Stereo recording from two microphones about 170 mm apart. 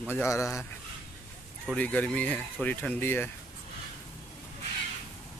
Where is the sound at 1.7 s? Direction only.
5° left (ahead or behind).